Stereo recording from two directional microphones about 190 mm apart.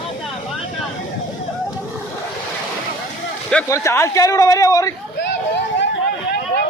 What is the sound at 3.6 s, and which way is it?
Speech, 15° left (ahead or behind).